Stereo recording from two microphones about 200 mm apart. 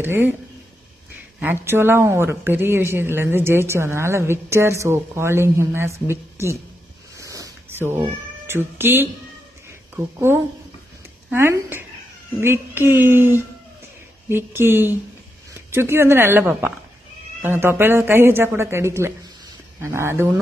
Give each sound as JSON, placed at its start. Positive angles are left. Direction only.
{"t": 0.0, "sound": "speech", "side_deg": -10}
{"t": 1.4, "sound": "speech", "side_deg": -10}
{"t": 7.2, "sound": "a sound", "side_deg": -15}
{"t": 8.5, "sound": "speech", "side_deg": -10}